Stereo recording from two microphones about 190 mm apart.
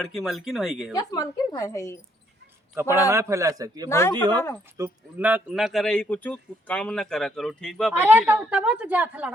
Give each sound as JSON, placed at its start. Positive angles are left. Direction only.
{"t": 0.0, "sound": "a man's voice", "side_deg": 0}
{"t": 0.9, "sound": "a woman's voice", "side_deg": 20}
{"t": 3.1, "sound": "a woman's voice", "side_deg": -15}
{"t": 3.8, "sound": "a woman's voice", "side_deg": 15}
{"t": 4.1, "sound": "speech", "side_deg": -25}
{"t": 4.8, "sound": "a man's voice", "side_deg": -10}
{"t": 7.9, "sound": "a woman's voice", "side_deg": -10}